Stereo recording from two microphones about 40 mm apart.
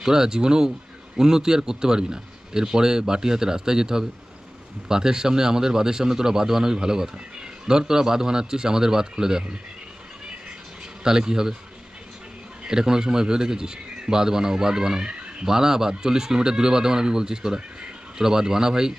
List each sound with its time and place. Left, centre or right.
0.0 s a man's voice: centre
11.0 s a man's voice: centre
12.6 s a man's voice: centre